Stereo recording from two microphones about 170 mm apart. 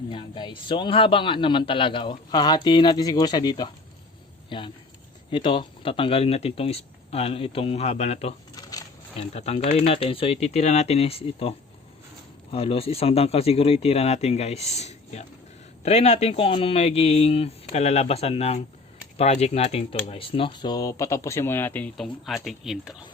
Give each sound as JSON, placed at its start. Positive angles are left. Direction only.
{"t": 0.1, "sound": "a man's voice", "side_deg": 30}